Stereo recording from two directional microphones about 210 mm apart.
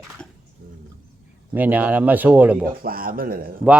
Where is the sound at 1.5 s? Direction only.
10° right (ahead or behind).